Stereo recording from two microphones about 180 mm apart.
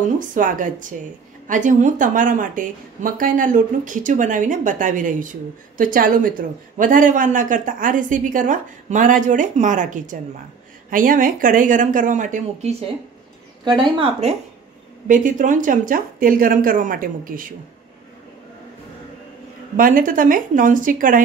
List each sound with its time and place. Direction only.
0.3 s speech: 50° right (ahead or behind)
13.7 s a woman's voice: 25° right (ahead or behind)
15.0 s speech: 45° right (ahead or behind)
19.8 s speech: 50° right (ahead or behind)